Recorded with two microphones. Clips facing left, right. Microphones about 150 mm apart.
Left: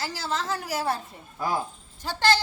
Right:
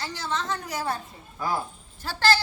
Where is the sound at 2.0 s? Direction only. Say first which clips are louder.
Even; 15° left (ahead or behind).